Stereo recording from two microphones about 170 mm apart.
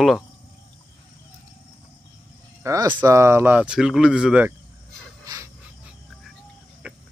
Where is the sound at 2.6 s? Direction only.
25° right (ahead or behind); by 4.5 s 5° right (ahead or behind).